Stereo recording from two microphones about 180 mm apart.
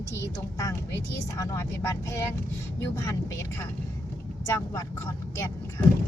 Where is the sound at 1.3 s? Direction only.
15° left (ahead or behind).